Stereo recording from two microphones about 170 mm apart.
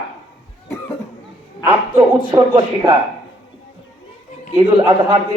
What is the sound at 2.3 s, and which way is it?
Speech, 25° right (ahead or behind).